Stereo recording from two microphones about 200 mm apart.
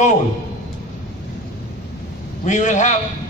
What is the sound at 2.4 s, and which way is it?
Speech, 35° left (ahead or behind).